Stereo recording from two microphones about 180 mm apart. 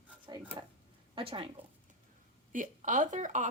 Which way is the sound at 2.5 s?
45° right (ahead or behind).